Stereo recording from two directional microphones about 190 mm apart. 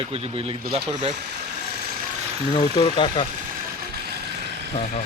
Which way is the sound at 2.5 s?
25° left (ahead or behind).